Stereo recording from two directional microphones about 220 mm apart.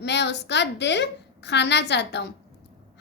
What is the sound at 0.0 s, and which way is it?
A woman's voice, 50° left (ahead or behind).